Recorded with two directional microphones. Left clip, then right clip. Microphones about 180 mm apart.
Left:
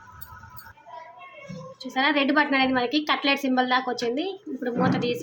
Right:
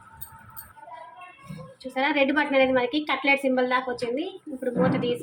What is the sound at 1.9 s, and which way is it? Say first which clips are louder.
A woman's voice: left 1 dB; 25° left (ahead or behind).